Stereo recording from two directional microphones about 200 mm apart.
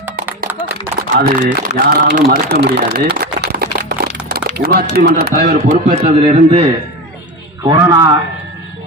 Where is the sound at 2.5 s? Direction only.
50° right (ahead or behind).